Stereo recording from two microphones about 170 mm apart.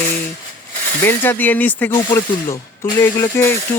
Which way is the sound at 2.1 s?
25° left (ahead or behind).